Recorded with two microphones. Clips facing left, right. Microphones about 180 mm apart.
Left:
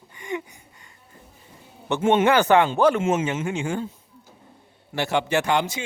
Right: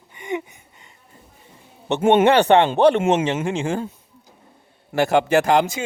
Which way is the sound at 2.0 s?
60° right (ahead or behind).